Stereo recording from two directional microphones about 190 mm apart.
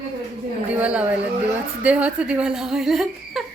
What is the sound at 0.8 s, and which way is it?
Speech, 5° right (ahead or behind).